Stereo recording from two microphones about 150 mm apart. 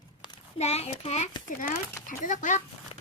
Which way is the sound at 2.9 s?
40° left (ahead or behind).